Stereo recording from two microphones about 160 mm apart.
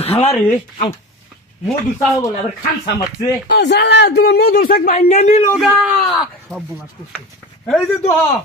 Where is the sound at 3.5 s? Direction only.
90° left; by 4.9 s 65° left (ahead or behind).